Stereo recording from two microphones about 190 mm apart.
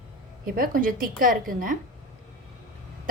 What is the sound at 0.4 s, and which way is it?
A woman's voice, 50° right (ahead or behind).